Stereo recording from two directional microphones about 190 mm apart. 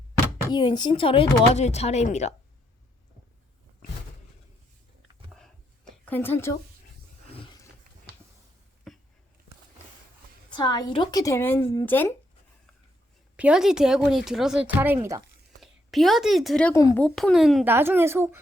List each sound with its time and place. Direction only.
0.5 s speech: 20° left (ahead or behind)
5.9 s a woman's voice: 10° left (ahead or behind)
7.3 s roaring cats: 25° left (ahead or behind)
8.9 s a sound: centre (ahead or behind)
10.5 s speech: 25° left (ahead or behind)
13.3 s speech: 5° right (ahead or behind)
15.6 s a woman's voice: centre (ahead or behind)
16.7 s speech: 15° left (ahead or behind)
17.0 s a child's voice: 5° left (ahead or behind); by 18.3 s 15° right (ahead or behind)